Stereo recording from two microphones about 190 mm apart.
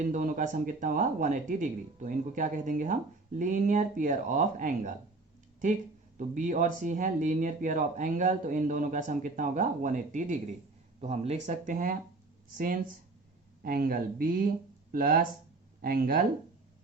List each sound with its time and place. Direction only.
0.1 s speech: 40° right (ahead or behind)
6.1 s speech: 40° right (ahead or behind)